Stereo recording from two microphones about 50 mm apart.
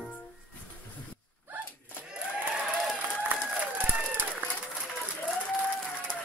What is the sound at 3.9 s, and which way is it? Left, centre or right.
Run, right.